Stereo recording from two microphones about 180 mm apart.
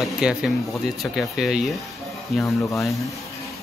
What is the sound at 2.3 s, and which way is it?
Speech, 35° right (ahead or behind).